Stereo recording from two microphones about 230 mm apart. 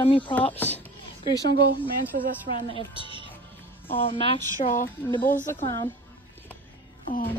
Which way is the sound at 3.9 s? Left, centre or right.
Left.